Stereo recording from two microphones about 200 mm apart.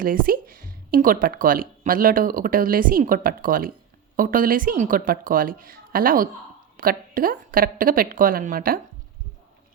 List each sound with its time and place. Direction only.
0.0 s speech: 45° right (ahead or behind)